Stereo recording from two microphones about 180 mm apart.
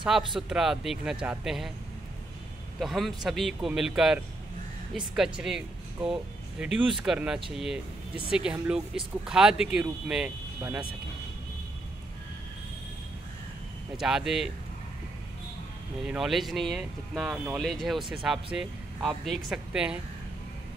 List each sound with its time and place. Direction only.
0.4 s speech: 5° right (ahead or behind)
2.8 s speech: centre (ahead or behind)
6.6 s speech: 5° right (ahead or behind)
13.9 s speech: 5° right (ahead or behind)
16.0 s speech: centre (ahead or behind)